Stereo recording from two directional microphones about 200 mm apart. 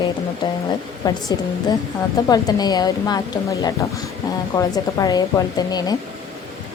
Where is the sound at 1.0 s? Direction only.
20° left (ahead or behind).